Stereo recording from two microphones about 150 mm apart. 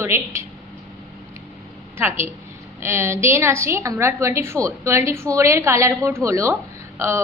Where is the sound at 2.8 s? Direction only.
15° right (ahead or behind).